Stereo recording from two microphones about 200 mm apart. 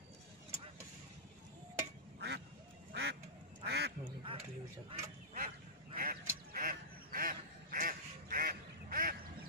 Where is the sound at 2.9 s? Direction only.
55° right (ahead or behind).